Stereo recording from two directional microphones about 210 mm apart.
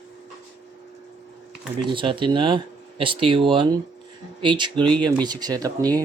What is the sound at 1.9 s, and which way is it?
Speech, 25° right (ahead or behind).